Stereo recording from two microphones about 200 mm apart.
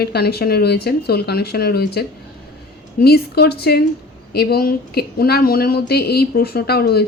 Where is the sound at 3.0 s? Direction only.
50° left (ahead or behind).